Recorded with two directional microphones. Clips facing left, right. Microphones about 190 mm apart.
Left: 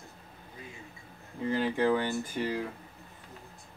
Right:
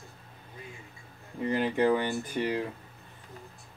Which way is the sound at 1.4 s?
15° right (ahead or behind).